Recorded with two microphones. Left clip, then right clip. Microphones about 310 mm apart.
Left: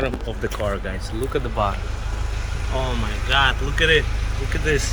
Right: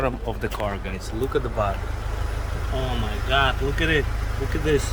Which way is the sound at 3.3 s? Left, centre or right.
Centre.